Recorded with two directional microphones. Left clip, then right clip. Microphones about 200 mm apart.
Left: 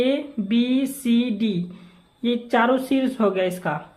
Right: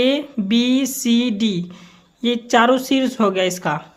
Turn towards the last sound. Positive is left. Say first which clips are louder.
# right 4 dB
turn(degrees=-30)  # may be behind; listen again after turning